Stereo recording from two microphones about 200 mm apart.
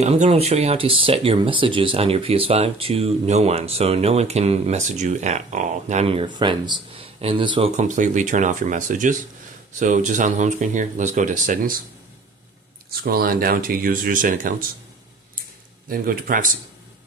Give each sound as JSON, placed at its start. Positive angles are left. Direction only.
{"t": 0.0, "sound": "speech", "side_deg": -30}
{"t": 13.0, "sound": "speech", "side_deg": -50}
{"t": 15.9, "sound": "speech", "side_deg": -45}